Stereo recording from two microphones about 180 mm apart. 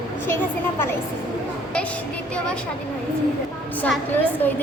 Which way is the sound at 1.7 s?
5° left (ahead or behind).